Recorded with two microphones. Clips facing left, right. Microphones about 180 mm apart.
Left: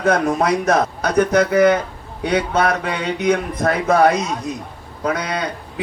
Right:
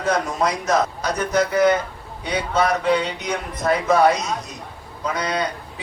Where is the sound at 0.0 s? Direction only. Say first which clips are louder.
Left 4 dB; 55° left (ahead or behind).